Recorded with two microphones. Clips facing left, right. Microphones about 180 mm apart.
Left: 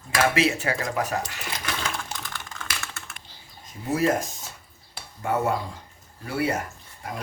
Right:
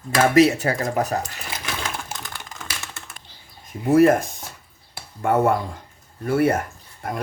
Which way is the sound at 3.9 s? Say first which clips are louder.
Right 8 dB; 55° right (ahead or behind).